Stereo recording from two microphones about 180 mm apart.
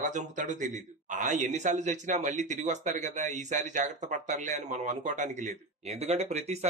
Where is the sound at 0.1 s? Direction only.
40° right (ahead or behind).